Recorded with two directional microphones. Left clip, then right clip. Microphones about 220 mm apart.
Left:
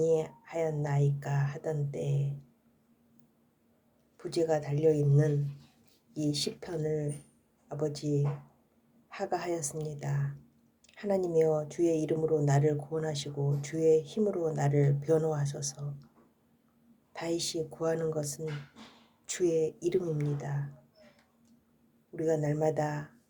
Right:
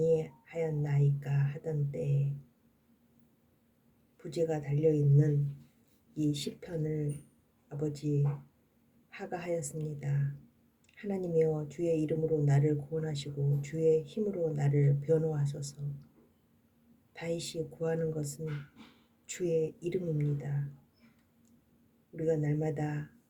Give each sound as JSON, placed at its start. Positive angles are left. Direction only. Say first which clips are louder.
{"t": 0.0, "sound": "speech", "louder": "left 1 dB", "side_deg": -5}
{"t": 4.2, "sound": "speech", "louder": "left 4 dB", "side_deg": -5}
{"t": 17.1, "sound": "speech", "louder": "left 4 dB", "side_deg": -5}
{"t": 22.1, "sound": "speech", "louder": "left 2 dB", "side_deg": -5}